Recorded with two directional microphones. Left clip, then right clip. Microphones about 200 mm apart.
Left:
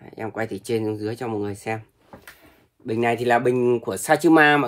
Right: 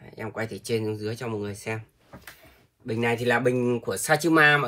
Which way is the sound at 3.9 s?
35° left (ahead or behind).